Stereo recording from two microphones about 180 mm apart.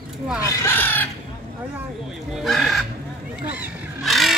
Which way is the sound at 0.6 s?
10° left (ahead or behind).